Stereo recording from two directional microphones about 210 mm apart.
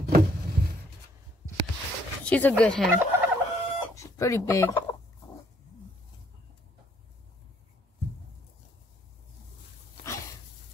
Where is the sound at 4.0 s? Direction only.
15° left (ahead or behind).